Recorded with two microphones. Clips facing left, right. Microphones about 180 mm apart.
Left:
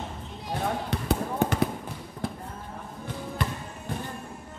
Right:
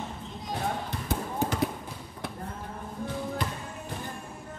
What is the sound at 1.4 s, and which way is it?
Basketball bounce, 60° left (ahead or behind).